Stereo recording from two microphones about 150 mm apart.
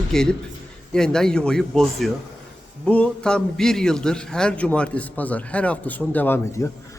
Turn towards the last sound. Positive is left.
turn(degrees=20)  # may be behind; listen again after turning